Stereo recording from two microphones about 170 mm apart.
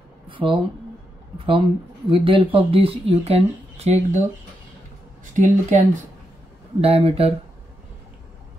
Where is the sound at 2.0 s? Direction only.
30° right (ahead or behind).